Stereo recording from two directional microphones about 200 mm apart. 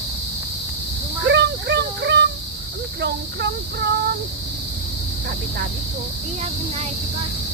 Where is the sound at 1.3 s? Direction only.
60° right (ahead or behind).